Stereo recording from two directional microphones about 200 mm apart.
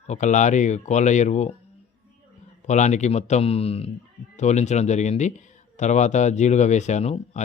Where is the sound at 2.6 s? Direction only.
35° left (ahead or behind).